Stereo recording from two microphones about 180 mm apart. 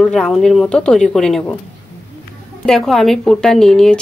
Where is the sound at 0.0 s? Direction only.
Centre (ahead or behind).